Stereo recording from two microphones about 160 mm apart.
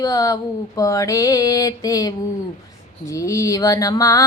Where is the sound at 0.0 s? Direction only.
20° left (ahead or behind).